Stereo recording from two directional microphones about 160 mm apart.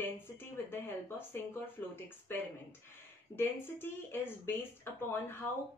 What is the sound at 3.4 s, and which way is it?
Speech, 15° left (ahead or behind).